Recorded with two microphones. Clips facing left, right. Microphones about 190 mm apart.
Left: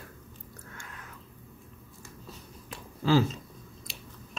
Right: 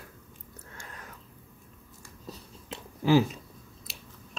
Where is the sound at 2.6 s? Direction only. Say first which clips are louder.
Right 2 dB; 20° right (ahead or behind).